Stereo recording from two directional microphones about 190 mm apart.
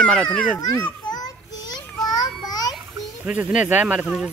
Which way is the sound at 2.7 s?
5° right (ahead or behind).